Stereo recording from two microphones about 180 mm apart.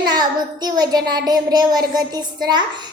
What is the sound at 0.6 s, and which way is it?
Child singing, 20° right (ahead or behind).